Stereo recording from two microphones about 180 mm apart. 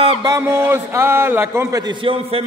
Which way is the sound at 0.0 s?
20° right (ahead or behind).